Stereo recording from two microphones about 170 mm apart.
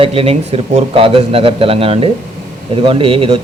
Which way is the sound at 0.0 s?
35° right (ahead or behind).